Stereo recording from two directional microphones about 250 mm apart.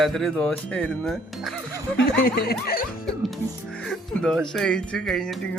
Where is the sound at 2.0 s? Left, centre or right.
Left.